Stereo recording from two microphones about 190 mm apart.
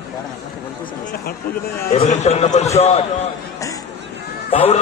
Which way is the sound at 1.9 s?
35° left (ahead or behind).